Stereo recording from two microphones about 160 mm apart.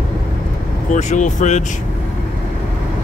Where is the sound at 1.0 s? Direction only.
50° left (ahead or behind).